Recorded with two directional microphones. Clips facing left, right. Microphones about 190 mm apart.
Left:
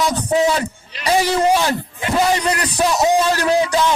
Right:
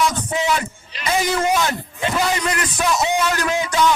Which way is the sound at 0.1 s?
35° left (ahead or behind).